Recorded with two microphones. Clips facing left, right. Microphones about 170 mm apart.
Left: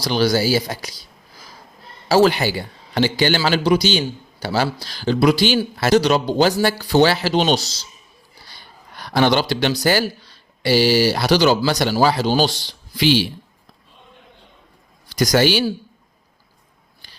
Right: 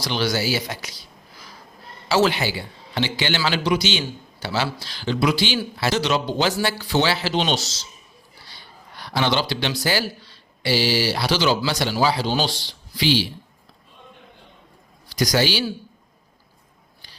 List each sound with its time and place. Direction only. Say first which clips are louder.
0.0 s speech: left 5 dB; 40° left (ahead or behind)
2.0 s a man's voice: left 5 dB; 40° left (ahead or behind)
8.5 s a sound: left 2 dB; 45° left (ahead or behind)
9.8 s a man's voice: left 5 dB; 45° left (ahead or behind)
15.1 s a man's voice: left 5 dB; 50° left (ahead or behind)